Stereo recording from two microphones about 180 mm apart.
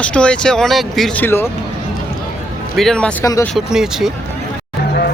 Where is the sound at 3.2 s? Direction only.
20° left (ahead or behind).